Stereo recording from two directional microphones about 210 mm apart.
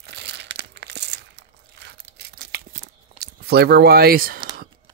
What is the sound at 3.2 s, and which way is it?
Speech, 50° right (ahead or behind).